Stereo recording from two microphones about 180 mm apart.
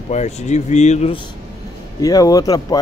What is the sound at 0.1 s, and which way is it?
Speech, 40° left (ahead or behind).